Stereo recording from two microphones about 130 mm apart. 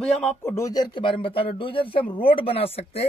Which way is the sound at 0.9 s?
40° left (ahead or behind).